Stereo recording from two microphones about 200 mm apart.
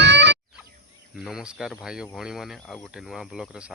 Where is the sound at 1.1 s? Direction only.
5° right (ahead or behind).